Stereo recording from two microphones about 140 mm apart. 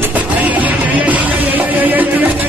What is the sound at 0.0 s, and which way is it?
Music, 10° right (ahead or behind).